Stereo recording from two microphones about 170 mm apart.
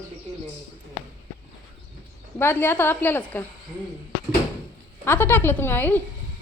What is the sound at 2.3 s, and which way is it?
A woman's voice, 15° left (ahead or behind).